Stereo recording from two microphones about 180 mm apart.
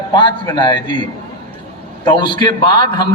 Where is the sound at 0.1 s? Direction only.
25° left (ahead or behind).